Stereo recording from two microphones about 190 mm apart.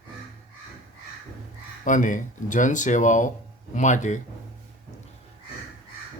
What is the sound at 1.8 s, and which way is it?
Speech, 40° left (ahead or behind).